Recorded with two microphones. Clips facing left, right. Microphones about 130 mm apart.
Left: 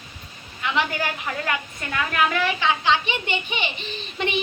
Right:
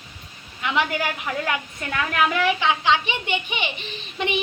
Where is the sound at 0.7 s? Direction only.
10° right (ahead or behind).